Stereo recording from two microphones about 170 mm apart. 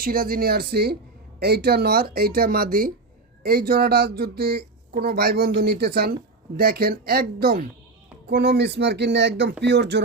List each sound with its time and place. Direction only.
0.0 s speech: 60° right (ahead or behind)
8.3 s speech: 75° right (ahead or behind)